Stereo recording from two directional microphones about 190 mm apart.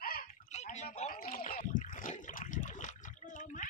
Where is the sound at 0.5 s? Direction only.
35° left (ahead or behind).